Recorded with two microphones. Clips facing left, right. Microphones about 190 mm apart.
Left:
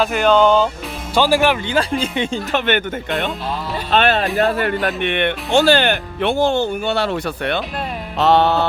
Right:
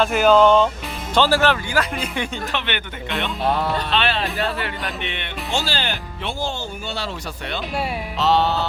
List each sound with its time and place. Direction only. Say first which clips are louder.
0.0 s speech: even; centre (ahead or behind)
1.1 s speech: left 2 dB; 15° left (ahead or behind)
1.8 s speech: left 5 dB; 30° left (ahead or behind)
2.5 s speech: left 8 dB; 45° left (ahead or behind)
3.4 s speech: right 4 dB; 60° right (ahead or behind)
3.9 s speech: left 11 dB; 45° left (ahead or behind)